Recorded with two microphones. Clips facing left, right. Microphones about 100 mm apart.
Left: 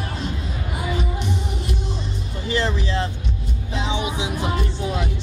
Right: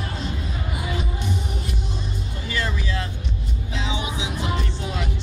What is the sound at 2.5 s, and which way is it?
Music, 25° left (ahead or behind).